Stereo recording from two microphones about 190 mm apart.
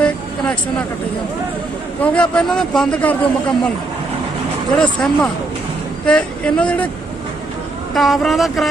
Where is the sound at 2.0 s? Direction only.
5° left (ahead or behind).